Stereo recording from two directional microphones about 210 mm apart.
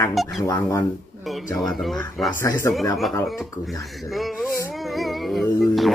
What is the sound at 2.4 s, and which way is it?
Speech, 10° left (ahead or behind).